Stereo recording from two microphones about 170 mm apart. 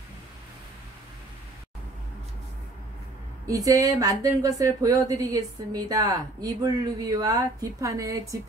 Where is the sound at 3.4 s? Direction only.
20° right (ahead or behind).